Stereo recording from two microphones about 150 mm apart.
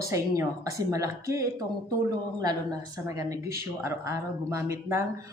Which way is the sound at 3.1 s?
20° right (ahead or behind).